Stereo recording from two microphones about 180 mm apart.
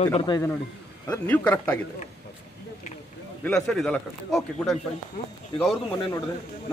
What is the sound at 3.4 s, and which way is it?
Speech, 5° left (ahead or behind).